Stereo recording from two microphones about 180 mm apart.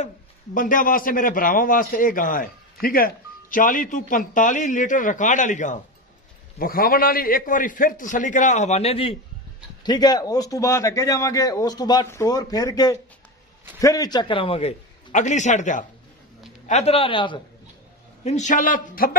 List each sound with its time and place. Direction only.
0.6 s a man's voice: 50° left (ahead or behind); by 9.1 s 35° left (ahead or behind)
9.8 s a man's voice: 25° left (ahead or behind)
18.2 s a man's voice: 40° left (ahead or behind)